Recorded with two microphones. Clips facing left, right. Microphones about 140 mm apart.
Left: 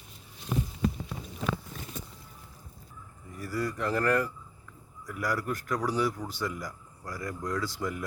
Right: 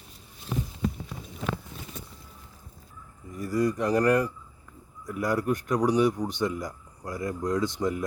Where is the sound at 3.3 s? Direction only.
20° right (ahead or behind).